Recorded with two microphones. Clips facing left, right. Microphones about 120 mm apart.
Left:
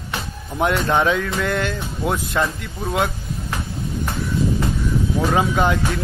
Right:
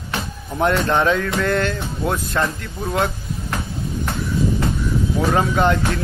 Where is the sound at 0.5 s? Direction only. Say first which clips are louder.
Right 1 dB; 5° left (ahead or behind).